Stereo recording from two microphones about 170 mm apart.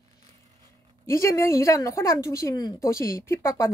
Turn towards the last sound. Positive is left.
turn(degrees=15)  # may be behind; listen again after turning